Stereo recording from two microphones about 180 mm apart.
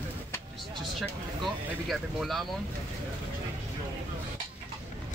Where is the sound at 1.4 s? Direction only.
Centre (ahead or behind).